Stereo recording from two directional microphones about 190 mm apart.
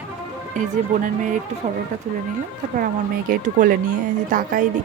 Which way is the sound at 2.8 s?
45° right (ahead or behind).